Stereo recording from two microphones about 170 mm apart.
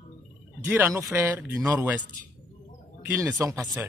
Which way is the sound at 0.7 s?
15° right (ahead or behind).